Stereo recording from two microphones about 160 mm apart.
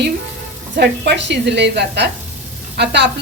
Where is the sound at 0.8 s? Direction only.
90° right.